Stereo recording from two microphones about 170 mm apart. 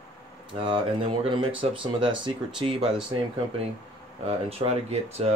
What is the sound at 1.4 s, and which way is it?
Speech, 30° right (ahead or behind).